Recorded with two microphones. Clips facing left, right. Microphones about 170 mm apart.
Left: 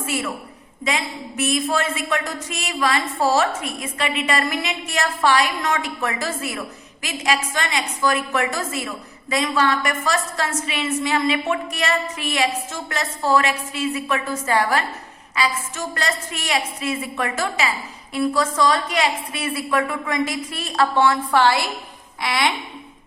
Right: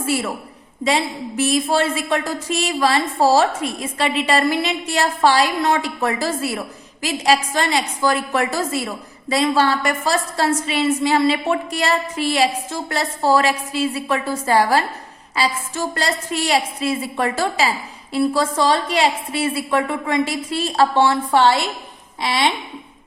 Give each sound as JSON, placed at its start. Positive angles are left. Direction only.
{"t": 0.0, "sound": "a woman's voice", "side_deg": -35}